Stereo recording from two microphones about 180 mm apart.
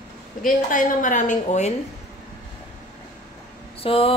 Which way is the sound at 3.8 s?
30° left (ahead or behind).